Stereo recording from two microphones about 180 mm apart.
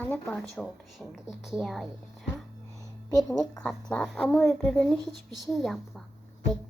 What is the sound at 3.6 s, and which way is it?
A woman's voice, 5° left (ahead or behind).